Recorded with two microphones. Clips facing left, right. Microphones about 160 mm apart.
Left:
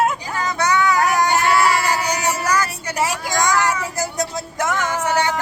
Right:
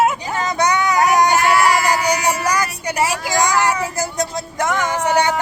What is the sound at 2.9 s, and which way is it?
Vehicle, centre (ahead or behind).